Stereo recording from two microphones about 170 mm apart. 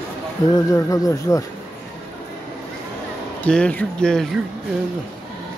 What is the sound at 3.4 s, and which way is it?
Speech, 5° left (ahead or behind).